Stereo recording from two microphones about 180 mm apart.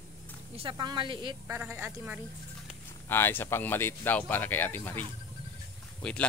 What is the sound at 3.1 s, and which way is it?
Speech, 10° left (ahead or behind).